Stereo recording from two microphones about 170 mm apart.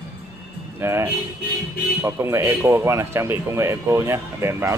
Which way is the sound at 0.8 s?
15° right (ahead or behind).